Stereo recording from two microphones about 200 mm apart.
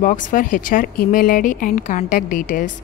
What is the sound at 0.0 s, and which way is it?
A woman's voice, 40° left (ahead or behind).